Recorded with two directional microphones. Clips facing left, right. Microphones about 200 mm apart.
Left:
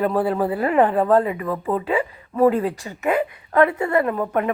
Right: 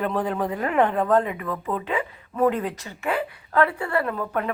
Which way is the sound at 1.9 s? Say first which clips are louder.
Left 5 dB; 10° left (ahead or behind).